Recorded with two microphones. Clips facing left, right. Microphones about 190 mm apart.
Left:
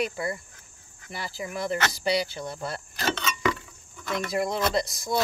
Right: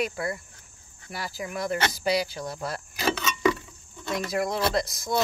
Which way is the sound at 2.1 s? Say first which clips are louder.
Even; centre (ahead or behind).